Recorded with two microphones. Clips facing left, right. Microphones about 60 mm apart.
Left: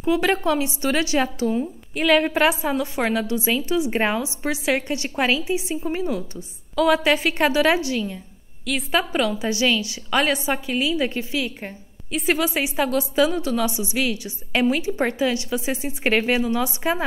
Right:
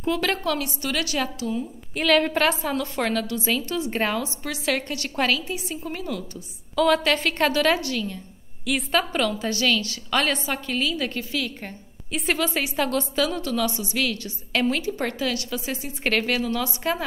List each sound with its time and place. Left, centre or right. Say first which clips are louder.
0.0 s a woman's voice: left 4 dB; centre; by 1.7 s left
2.0 s a woman's voice: left 2 dB; centre
6.7 s a woman's voice: left 2 dB; centre
8.6 s a woman's voice: left 1 dB; centre
12.1 s a woman's voice: left 3 dB; centre